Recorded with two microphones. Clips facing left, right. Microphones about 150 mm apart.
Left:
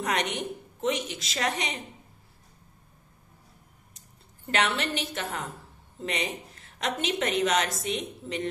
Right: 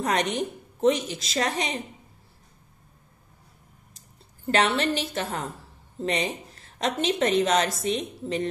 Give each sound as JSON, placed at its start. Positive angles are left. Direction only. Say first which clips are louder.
{"t": 0.0, "sound": "a woman's voice", "louder": "right 4 dB", "side_deg": -35}
{"t": 4.5, "sound": "a woman's voice", "louder": "right 5 dB", "side_deg": -35}